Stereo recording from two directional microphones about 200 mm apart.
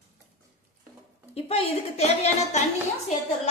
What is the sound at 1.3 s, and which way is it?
A woman's voice, 30° left (ahead or behind).